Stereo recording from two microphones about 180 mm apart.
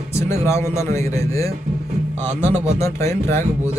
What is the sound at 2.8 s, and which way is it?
Speech, 15° left (ahead or behind).